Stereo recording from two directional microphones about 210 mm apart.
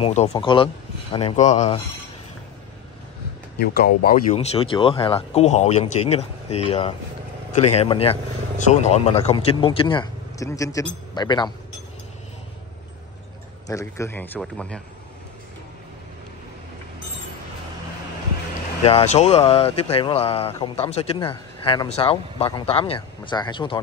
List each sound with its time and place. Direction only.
0.0 s speech: 30° left (ahead or behind)
3.5 s speech: 50° left (ahead or behind)
4.3 s speech: 30° left (ahead or behind)
13.7 s speech: 15° left (ahead or behind)
18.9 s speech: 30° left (ahead or behind)